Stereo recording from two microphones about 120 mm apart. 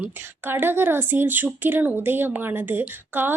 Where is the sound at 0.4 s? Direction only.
20° right (ahead or behind).